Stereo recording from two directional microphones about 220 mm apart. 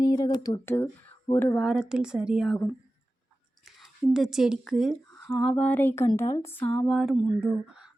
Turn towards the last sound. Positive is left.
turn(degrees=0)  # may be behind; listen again after turning